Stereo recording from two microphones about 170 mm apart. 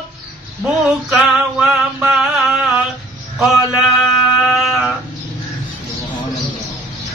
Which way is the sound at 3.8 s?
Centre (ahead or behind).